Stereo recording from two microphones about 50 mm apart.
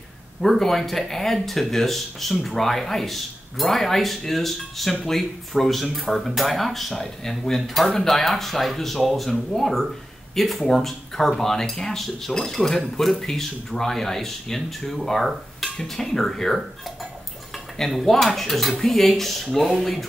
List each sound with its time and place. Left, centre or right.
0.4 s speech: centre
17.7 s speech: centre